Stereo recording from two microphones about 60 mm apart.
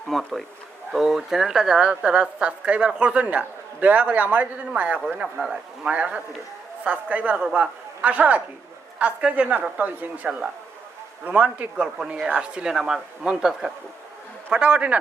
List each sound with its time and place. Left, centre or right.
0.1 s speech: centre; by 4.7 s right
5.2 s speech: centre
5.9 s speech: right; by 13.7 s centre
14.5 s speech: centre